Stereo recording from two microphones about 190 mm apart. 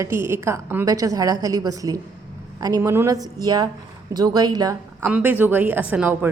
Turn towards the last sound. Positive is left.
turn(degrees=-10)  # may be behind; listen again after turning